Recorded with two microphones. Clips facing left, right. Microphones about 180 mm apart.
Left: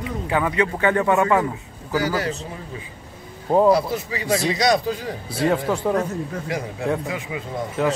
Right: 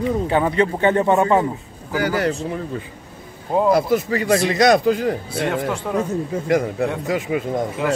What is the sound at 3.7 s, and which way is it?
A man's voice, 55° right (ahead or behind).